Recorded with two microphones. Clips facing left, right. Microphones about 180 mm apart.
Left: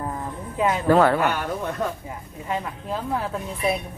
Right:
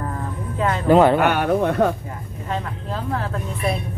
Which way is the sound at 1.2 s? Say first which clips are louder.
Right 6 dB; 65° right (ahead or behind).